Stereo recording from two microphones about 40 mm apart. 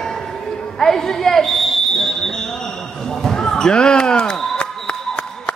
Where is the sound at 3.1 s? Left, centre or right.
Centre.